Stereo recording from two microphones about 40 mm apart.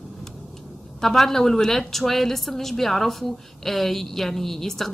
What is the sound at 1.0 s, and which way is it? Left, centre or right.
A woman's voice, centre.